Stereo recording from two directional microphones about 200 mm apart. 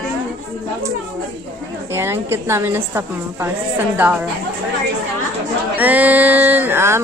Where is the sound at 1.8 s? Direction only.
10° right (ahead or behind).